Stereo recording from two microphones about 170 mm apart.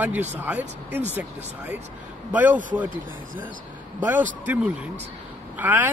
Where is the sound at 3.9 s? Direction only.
10° right (ahead or behind).